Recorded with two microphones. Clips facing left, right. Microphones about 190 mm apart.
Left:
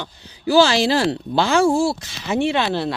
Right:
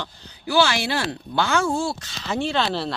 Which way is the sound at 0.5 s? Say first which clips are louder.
Left 6 dB; 30° left (ahead or behind).